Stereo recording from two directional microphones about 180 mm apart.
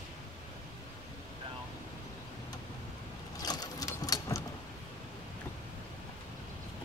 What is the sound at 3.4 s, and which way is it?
Gears, 20° left (ahead or behind).